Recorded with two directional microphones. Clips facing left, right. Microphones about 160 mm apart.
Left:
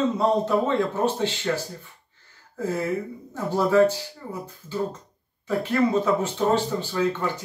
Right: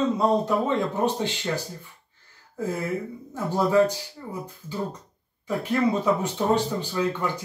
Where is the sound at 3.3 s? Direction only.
15° right (ahead or behind).